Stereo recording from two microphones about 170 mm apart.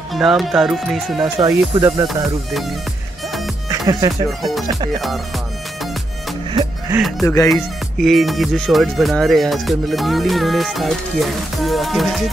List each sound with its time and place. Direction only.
0.1 s speech: centre (ahead or behind)
1.4 s speech: 25° right (ahead or behind)
3.6 s speech: 20° right (ahead or behind)
7.0 s speech: centre (ahead or behind)